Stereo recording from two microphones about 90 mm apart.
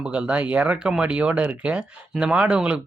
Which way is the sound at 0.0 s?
10° right (ahead or behind).